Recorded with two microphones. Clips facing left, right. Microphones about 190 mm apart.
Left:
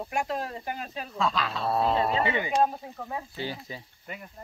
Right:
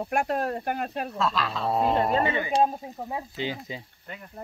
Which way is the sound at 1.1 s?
Centre (ahead or behind).